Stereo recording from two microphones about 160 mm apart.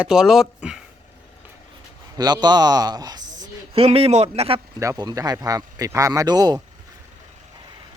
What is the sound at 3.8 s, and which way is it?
Speech, 40° right (ahead or behind).